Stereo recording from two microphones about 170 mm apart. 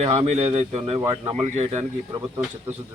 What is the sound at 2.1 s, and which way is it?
Speech, 20° right (ahead or behind).